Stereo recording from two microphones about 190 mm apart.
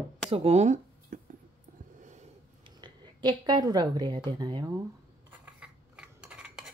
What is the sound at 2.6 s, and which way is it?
A woman's voice, 25° right (ahead or behind).